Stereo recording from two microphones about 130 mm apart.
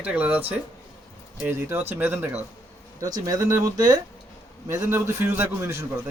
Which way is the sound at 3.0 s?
25° right (ahead or behind).